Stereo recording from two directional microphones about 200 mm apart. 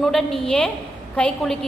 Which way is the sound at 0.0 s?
Centre (ahead or behind).